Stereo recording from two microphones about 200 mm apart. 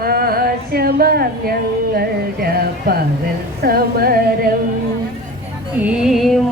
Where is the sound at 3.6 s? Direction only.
50° right (ahead or behind).